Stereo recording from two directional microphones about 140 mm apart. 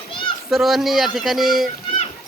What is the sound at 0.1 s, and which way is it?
Children playing, 35° left (ahead or behind).